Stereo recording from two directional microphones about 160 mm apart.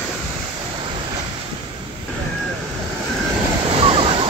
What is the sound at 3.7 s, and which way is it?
Waves, 35° right (ahead or behind).